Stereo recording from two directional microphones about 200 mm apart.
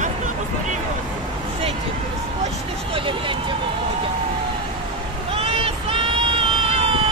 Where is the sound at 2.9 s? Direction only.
25° right (ahead or behind).